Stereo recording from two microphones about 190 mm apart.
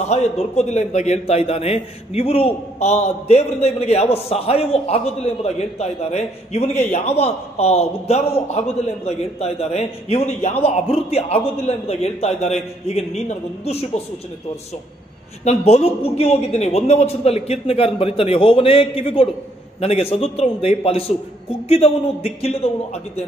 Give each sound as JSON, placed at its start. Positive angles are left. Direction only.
{"t": 0.0, "sound": "a man's voice", "side_deg": 35}
{"t": 15.4, "sound": "a man's voice", "side_deg": 35}